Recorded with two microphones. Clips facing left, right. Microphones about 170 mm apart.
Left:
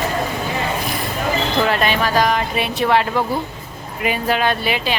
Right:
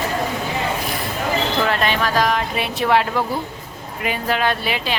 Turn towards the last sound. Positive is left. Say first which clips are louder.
# left 2 dB
turn(degrees=0)  # may be behind; listen again after turning